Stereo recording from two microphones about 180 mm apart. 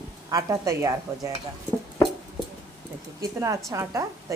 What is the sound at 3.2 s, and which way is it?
Speech, 15° right (ahead or behind).